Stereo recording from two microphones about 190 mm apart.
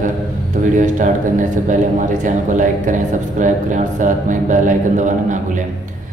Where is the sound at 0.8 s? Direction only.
40° right (ahead or behind).